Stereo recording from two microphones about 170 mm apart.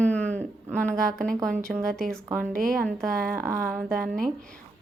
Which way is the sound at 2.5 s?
55° right (ahead or behind).